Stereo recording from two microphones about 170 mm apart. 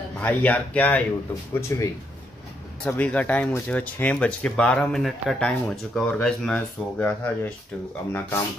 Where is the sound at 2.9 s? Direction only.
10° left (ahead or behind).